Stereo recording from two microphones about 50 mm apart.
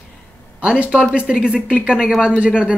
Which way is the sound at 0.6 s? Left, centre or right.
Centre.